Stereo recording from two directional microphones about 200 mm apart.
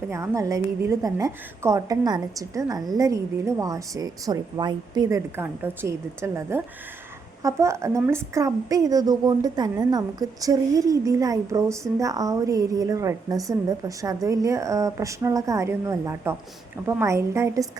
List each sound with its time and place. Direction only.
0.1 s a woman's voice: 15° right (ahead or behind)